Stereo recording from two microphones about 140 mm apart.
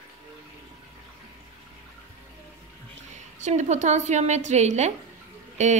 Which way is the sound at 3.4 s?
55° right (ahead or behind).